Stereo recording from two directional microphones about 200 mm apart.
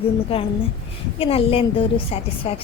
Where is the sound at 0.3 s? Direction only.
30° left (ahead or behind).